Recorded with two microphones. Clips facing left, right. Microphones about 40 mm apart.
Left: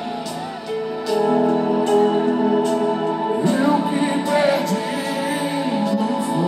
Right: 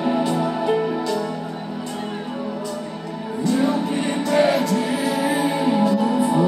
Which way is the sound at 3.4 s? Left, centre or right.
Left.